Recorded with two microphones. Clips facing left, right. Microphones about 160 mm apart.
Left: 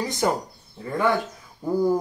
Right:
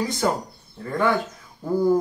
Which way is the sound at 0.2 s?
20° left (ahead or behind).